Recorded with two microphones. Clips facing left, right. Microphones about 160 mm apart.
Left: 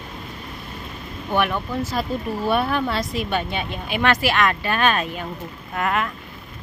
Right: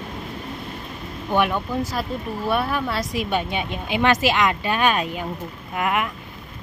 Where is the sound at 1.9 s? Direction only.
Centre (ahead or behind).